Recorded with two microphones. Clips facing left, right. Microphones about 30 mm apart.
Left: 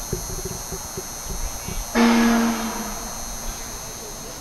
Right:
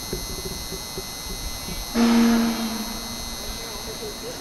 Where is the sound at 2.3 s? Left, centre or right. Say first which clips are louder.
Left 1 dB; right.